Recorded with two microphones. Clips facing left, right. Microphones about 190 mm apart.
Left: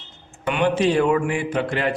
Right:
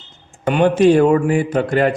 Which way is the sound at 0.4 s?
45° right (ahead or behind).